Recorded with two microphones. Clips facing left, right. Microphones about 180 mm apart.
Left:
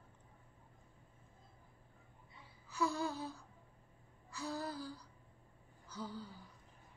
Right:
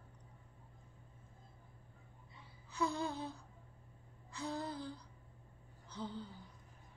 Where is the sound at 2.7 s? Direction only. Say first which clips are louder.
Left 1 dB; 20° right (ahead or behind).